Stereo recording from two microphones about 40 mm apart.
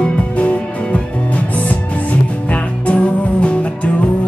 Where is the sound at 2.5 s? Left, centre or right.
Left.